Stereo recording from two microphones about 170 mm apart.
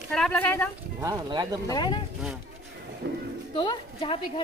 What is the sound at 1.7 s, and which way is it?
Speech, 25° left (ahead or behind).